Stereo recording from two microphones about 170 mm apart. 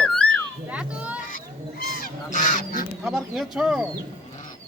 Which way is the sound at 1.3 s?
60° left (ahead or behind).